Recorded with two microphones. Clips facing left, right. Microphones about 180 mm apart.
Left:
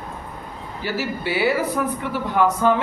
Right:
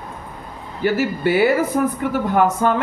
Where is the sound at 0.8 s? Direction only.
50° right (ahead or behind).